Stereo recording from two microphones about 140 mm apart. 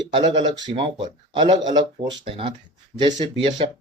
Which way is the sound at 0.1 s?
35° right (ahead or behind).